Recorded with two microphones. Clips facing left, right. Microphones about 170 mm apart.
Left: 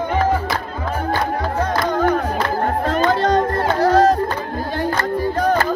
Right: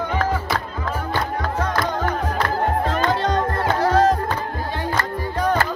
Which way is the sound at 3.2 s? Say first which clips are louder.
Left 4 dB; 40° left (ahead or behind).